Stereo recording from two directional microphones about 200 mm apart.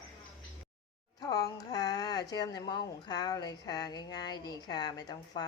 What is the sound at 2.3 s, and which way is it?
A woman's voice, 20° left (ahead or behind).